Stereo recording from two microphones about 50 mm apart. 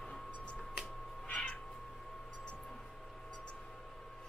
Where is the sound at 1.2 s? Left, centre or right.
Left.